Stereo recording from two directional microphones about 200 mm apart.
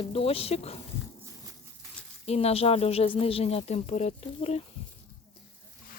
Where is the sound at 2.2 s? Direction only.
30° left (ahead or behind).